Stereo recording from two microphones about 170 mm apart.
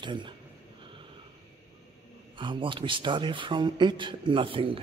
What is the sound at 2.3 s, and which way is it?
Speech, 30° right (ahead or behind).